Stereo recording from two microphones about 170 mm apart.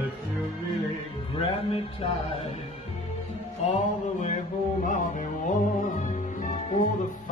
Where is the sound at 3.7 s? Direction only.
45° left (ahead or behind).